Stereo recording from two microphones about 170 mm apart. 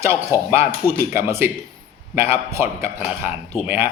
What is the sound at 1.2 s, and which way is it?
Speech, 15° right (ahead or behind).